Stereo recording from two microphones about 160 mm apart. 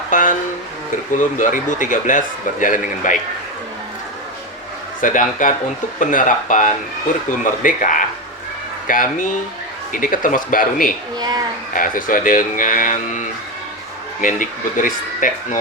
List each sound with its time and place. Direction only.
0.1 s a sound: 55° left (ahead or behind)
1.1 s speech: 55° left (ahead or behind)
4.9 s speech: 55° left (ahead or behind)